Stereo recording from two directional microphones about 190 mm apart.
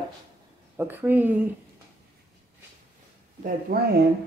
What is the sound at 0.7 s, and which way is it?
Speech, 10° right (ahead or behind).